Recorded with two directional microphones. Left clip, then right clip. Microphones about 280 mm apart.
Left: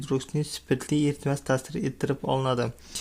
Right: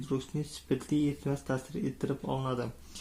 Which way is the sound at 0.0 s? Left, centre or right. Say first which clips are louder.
Left 6 dB; left.